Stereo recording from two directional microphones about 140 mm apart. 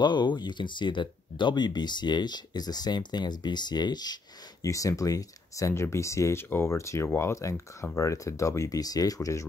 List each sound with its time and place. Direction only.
0.0 s speech: 35° left (ahead or behind)